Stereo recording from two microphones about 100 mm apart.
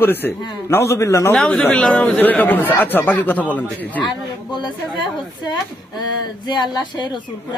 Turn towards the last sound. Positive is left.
turn(degrees=45)  # may be behind; listen again after turning